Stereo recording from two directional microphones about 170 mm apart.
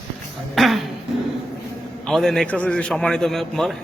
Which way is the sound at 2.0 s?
Centre (ahead or behind).